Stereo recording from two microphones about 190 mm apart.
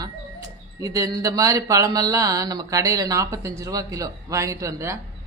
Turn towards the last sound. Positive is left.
turn(degrees=-15)  # may be behind; listen again after turning